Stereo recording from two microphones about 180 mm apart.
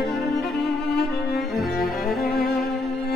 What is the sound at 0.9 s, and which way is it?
Cello, 65° left (ahead or behind).